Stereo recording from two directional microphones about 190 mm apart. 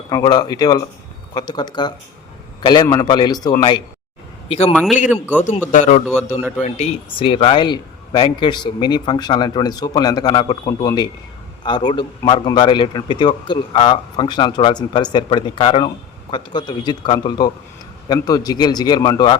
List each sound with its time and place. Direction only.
0.1 s speech: 20° left (ahead or behind)
4.7 s speech: 5° left (ahead or behind)
5.0 s a man's voice: 10° right (ahead or behind)
5.7 s a man's voice: 40° left (ahead or behind); by 19.4 s 20° left (ahead or behind)